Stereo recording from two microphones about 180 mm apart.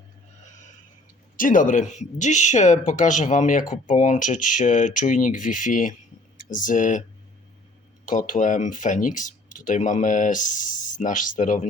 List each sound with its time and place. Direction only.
1.4 s speech: 50° left (ahead or behind)
8.0 s speech: 50° left (ahead or behind)